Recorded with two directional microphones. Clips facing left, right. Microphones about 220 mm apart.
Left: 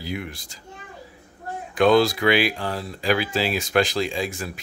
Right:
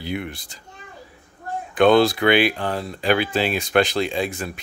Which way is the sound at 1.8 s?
Centre (ahead or behind).